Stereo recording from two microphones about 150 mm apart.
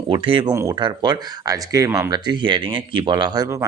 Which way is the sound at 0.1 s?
35° right (ahead or behind).